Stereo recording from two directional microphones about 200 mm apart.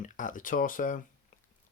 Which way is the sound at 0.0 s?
40° left (ahead or behind).